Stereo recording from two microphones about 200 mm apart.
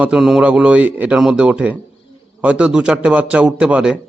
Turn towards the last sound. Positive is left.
turn(degrees=-5)  # may be behind; listen again after turning